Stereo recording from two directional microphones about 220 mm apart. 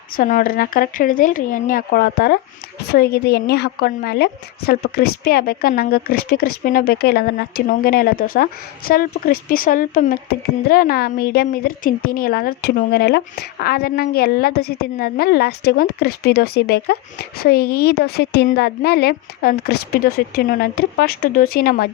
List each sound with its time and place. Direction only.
0.2 s a woman's voice: 40° left (ahead or behind)